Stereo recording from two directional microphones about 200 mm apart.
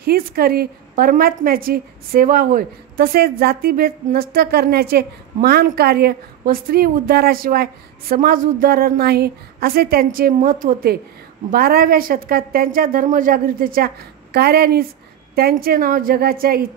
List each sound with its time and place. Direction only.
0.0 s a woman's voice: 50° right (ahead or behind)